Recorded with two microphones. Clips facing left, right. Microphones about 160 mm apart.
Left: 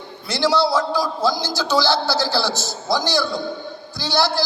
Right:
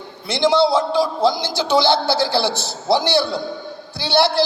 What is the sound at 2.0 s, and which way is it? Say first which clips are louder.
A man's voice: right 3 dB; 55° right (ahead or behind).